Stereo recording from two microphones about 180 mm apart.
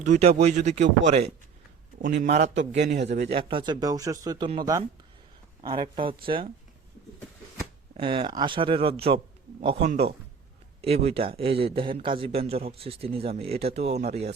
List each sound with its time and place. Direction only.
0.0 s a man's voice: 40° right (ahead or behind)
7.9 s a man's voice: 30° right (ahead or behind)